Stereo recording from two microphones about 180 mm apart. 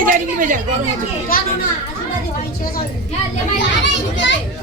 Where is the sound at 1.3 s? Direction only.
55° left (ahead or behind).